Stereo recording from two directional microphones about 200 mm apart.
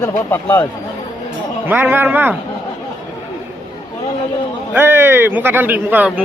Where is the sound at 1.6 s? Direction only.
10° right (ahead or behind).